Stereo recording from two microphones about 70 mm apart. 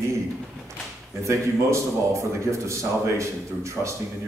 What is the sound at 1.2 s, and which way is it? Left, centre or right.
A man's voice, right.